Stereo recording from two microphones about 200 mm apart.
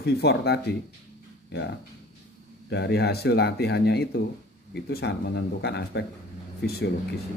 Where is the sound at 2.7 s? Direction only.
55° left (ahead or behind).